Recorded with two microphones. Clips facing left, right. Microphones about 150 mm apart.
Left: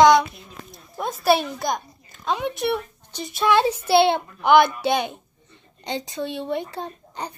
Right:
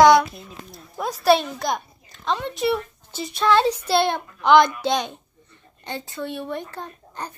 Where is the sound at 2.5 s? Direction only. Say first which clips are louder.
Right 2 dB; centre (ahead or behind).